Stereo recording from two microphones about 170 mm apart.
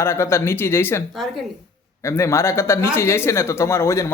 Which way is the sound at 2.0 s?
15° left (ahead or behind).